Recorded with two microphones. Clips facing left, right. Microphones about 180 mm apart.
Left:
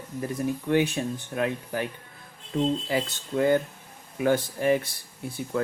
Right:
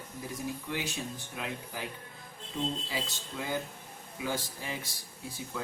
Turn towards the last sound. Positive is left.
turn(degrees=60)  # may be behind; listen again after turning